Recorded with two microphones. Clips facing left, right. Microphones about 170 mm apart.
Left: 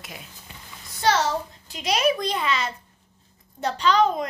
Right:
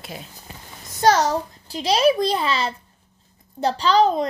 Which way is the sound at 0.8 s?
40° right (ahead or behind).